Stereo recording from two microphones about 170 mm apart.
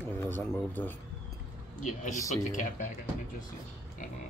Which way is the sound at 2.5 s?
45° left (ahead or behind).